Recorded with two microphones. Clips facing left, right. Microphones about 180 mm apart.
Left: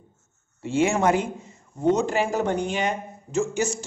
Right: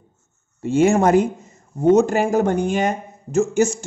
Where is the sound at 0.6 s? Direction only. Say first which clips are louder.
Right 6 dB; 40° right (ahead or behind).